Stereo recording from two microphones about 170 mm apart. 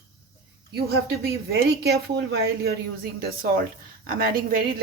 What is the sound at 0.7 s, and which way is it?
A woman's voice, 65° right (ahead or behind).